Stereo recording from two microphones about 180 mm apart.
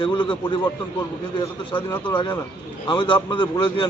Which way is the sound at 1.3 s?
25° left (ahead or behind).